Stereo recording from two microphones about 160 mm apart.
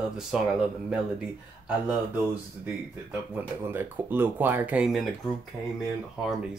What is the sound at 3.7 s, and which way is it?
Speech, 15° right (ahead or behind).